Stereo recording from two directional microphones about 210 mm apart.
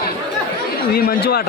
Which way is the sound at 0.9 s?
45° left (ahead or behind).